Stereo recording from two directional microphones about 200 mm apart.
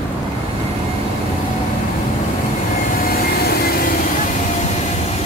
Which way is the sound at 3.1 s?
50° left (ahead or behind).